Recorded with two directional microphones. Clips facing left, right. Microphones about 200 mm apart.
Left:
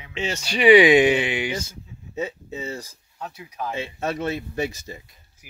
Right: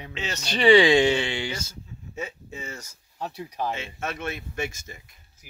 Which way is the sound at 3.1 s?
35° right (ahead or behind).